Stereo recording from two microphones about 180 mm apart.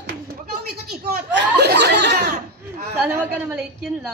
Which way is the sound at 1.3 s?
65° right (ahead or behind).